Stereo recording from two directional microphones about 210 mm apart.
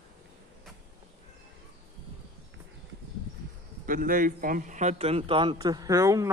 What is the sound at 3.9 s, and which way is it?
A man's voice, 40° right (ahead or behind).